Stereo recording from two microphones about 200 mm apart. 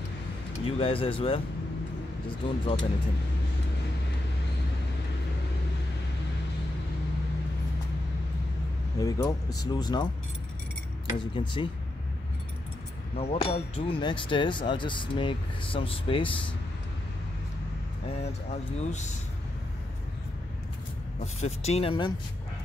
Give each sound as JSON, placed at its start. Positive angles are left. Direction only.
{"t": 0.7, "sound": "speech", "side_deg": 25}
{"t": 8.9, "sound": "speech", "side_deg": 15}
{"t": 11.3, "sound": "speech", "side_deg": 25}
{"t": 13.2, "sound": "speech", "side_deg": 30}
{"t": 18.5, "sound": "speech", "side_deg": 35}
{"t": 21.2, "sound": "speech", "side_deg": 35}